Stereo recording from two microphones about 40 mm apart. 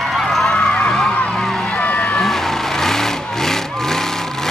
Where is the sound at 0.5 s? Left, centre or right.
Left.